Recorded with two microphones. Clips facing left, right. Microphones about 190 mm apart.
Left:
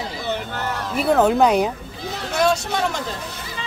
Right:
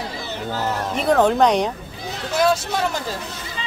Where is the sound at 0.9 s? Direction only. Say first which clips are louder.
Left 1 dB; 5° left (ahead or behind).